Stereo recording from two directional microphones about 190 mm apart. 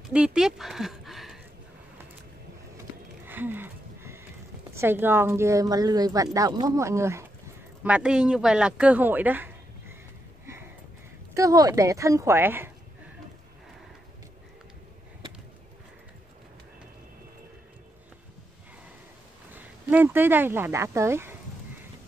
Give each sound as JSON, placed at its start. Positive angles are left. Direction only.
{"t": 0.1, "sound": "speech", "side_deg": -5}
{"t": 3.3, "sound": "a sound", "side_deg": -10}
{"t": 4.7, "sound": "speech", "side_deg": -10}
{"t": 10.4, "sound": "a sound", "side_deg": -15}
{"t": 11.3, "sound": "speech", "side_deg": -20}
{"t": 19.5, "sound": "speech", "side_deg": -10}